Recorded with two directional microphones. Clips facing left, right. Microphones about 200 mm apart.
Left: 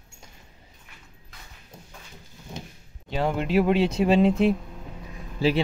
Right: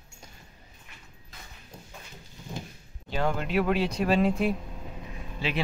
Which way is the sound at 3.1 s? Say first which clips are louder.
Left 4 dB; 25° left (ahead or behind).